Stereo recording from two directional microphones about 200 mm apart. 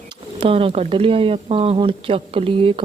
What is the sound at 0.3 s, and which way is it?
Speech, 30° right (ahead or behind).